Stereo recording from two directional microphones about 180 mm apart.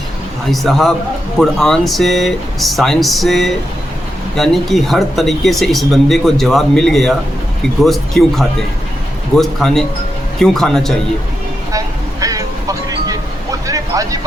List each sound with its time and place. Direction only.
0.5 s speech: centre (ahead or behind)
12.2 s music: 20° right (ahead or behind)